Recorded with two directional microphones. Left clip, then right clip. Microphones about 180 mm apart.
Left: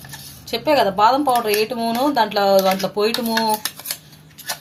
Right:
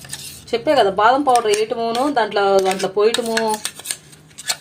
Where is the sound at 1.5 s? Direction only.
25° right (ahead or behind).